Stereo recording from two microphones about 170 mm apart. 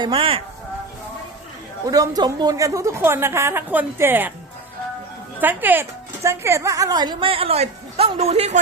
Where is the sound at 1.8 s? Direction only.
20° right (ahead or behind).